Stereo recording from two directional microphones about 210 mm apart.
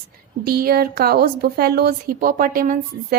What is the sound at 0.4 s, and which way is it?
A woman's voice, 45° right (ahead or behind).